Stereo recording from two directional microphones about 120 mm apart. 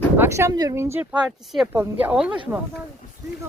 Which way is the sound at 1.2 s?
5° right (ahead or behind).